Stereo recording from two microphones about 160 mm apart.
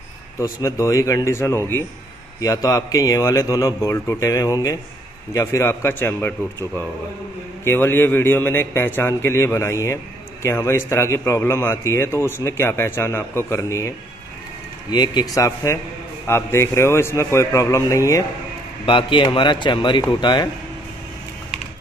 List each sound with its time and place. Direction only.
0.4 s a man's voice: 20° left (ahead or behind)
18.9 s a man's voice: 30° left (ahead or behind)